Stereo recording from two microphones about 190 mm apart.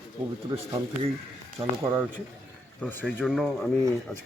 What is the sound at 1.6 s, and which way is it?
Speech, 15° right (ahead or behind).